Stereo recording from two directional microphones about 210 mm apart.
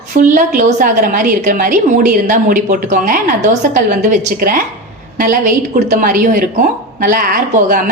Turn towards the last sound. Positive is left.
turn(degrees=-40)  # may be behind; listen again after turning